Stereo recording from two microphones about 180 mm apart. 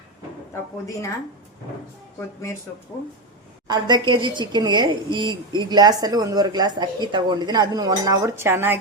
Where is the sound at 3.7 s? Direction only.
25° right (ahead or behind).